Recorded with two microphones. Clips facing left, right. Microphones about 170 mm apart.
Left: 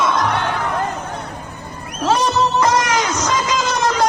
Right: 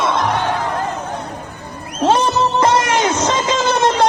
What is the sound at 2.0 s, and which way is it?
Music, 25° right (ahead or behind).